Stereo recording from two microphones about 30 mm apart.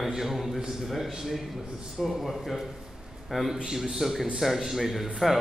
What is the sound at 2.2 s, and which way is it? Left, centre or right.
A man's voice, centre.